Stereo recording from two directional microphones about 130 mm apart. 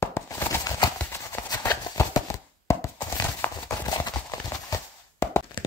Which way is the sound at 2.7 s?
20° left (ahead or behind).